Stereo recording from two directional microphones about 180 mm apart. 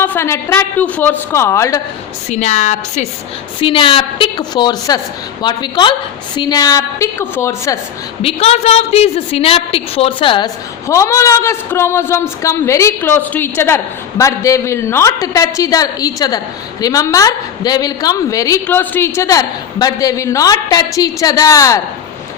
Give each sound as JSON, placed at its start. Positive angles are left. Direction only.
{"t": 0.0, "sound": "speech", "side_deg": 15}
{"t": 2.3, "sound": "a woman's voice", "side_deg": 40}
{"t": 3.6, "sound": "a woman's voice", "side_deg": 30}
{"t": 8.2, "sound": "a woman's voice", "side_deg": 35}
{"t": 10.8, "sound": "a woman's voice", "side_deg": 15}